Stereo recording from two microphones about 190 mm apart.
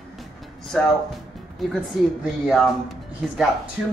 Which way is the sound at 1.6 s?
Centre (ahead or behind).